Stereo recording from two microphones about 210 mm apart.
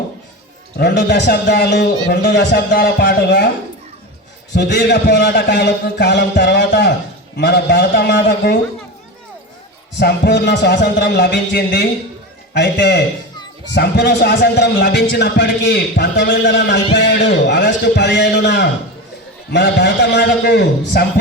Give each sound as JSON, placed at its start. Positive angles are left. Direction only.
{"t": 0.8, "sound": "a man's voice", "side_deg": 55}
{"t": 4.5, "sound": "a man's voice", "side_deg": 55}
{"t": 10.0, "sound": "a man's voice", "side_deg": 50}